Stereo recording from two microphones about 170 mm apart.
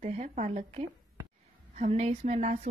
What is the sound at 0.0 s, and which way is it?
Speech, 45° right (ahead or behind).